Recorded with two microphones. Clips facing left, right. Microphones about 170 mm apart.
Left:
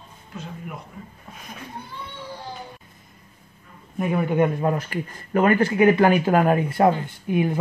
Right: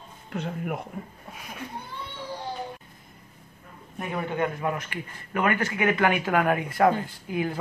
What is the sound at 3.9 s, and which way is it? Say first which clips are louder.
Speech: left 8 dB; 10° left (ahead or behind).